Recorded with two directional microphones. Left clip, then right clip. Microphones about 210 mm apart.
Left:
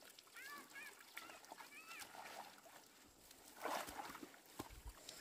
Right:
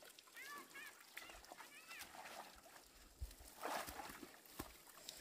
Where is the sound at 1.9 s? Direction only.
Centre (ahead or behind).